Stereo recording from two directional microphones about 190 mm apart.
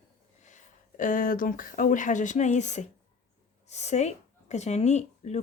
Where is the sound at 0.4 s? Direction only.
40° left (ahead or behind).